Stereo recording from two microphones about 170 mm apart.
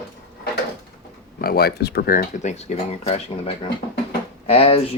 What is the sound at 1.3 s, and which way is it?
Speech, 65° left (ahead or behind).